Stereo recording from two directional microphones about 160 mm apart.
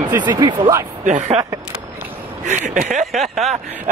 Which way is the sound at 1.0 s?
50° right (ahead or behind).